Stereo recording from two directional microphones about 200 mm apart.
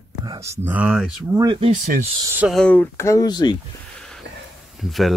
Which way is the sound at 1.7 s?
35° right (ahead or behind).